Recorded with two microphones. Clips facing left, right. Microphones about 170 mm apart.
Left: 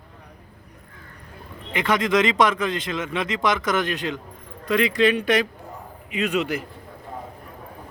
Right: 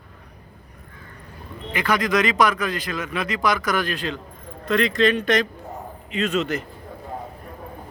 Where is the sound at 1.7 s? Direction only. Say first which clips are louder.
Left 1 dB; 25° left (ahead or behind).